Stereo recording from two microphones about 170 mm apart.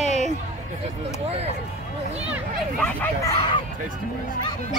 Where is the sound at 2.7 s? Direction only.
10° left (ahead or behind).